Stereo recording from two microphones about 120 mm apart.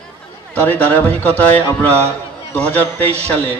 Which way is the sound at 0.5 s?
15° left (ahead or behind).